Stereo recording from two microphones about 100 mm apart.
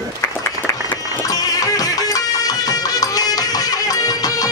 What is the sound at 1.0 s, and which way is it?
Music, 35° left (ahead or behind).